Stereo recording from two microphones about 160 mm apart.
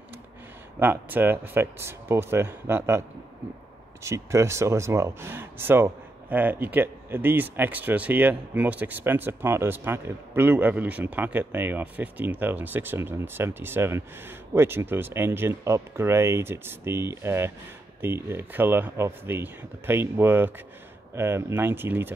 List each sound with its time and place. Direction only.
0.7 s speech: 10° right (ahead or behind)